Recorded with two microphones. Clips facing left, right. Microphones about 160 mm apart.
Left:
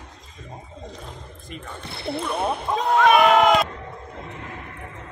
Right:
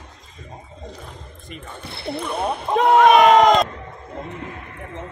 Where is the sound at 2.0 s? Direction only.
Centre (ahead or behind).